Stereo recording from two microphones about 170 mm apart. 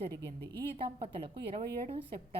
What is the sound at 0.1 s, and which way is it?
Speech, 15° left (ahead or behind).